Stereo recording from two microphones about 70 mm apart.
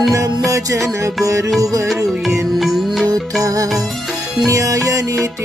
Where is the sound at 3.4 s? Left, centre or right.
Right.